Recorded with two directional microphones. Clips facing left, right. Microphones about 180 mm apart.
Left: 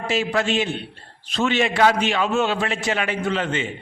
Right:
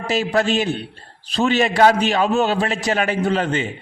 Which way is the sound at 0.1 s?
40° right (ahead or behind).